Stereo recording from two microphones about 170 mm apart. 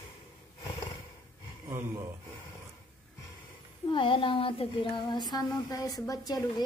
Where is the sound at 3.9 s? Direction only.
30° left (ahead or behind).